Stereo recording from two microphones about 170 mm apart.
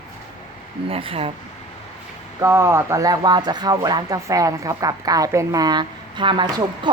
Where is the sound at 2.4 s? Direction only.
15° right (ahead or behind).